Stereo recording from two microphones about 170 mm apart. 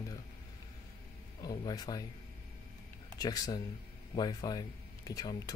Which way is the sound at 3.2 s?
20° left (ahead or behind).